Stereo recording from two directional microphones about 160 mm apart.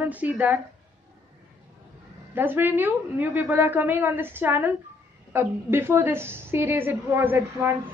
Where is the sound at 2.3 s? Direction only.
15° right (ahead or behind).